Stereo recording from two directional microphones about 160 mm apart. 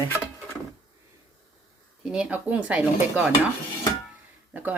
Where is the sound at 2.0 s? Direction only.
5° right (ahead or behind).